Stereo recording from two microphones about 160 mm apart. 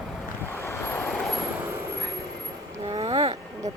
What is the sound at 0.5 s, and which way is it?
Waves, 15° left (ahead or behind).